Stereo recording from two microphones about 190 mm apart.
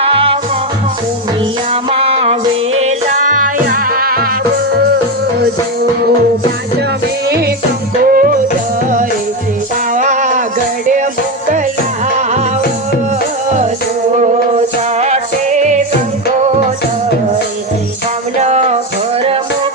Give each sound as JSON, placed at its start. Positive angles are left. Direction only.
{"t": 0.1, "sound": "music", "side_deg": -30}
{"t": 1.7, "sound": "music", "side_deg": -30}
{"t": 7.3, "sound": "music", "side_deg": -55}
{"t": 9.9, "sound": "a sound", "side_deg": -45}
{"t": 14.9, "sound": "music", "side_deg": -35}
{"t": 18.3, "sound": "music", "side_deg": -35}